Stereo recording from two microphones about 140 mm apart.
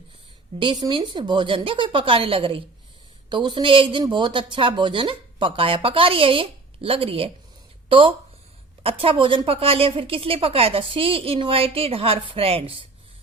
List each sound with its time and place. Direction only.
0.6 s a woman's voice: 35° right (ahead or behind)